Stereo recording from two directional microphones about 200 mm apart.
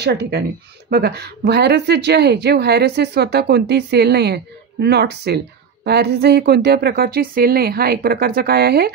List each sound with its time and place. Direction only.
0.0 s a woman's voice: 55° right (ahead or behind)